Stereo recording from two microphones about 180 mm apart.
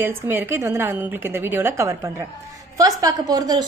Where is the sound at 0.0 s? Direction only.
10° right (ahead or behind).